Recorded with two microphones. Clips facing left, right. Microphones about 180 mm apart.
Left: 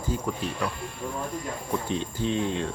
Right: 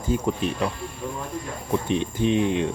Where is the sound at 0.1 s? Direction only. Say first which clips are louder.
Right 6 dB; 20° right (ahead or behind).